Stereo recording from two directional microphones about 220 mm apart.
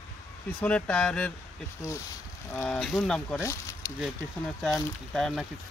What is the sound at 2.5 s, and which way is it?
Speech, 5° left (ahead or behind).